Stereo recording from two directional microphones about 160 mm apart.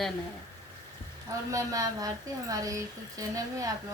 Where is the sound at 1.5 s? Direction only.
20° right (ahead or behind).